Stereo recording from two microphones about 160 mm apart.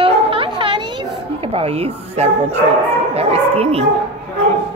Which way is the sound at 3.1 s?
40° right (ahead or behind).